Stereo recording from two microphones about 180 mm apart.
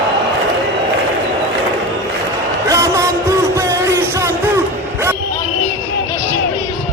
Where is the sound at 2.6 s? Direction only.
15° right (ahead or behind).